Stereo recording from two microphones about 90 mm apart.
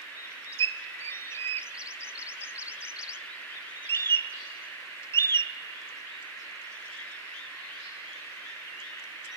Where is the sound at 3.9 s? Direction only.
25° left (ahead or behind).